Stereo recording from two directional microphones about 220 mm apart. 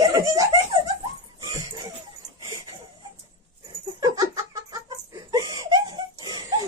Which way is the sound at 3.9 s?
15° right (ahead or behind).